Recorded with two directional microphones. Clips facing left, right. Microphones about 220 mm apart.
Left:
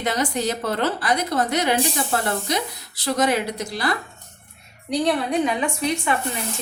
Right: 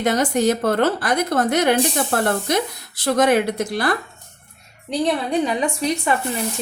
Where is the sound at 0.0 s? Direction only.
50° right (ahead or behind).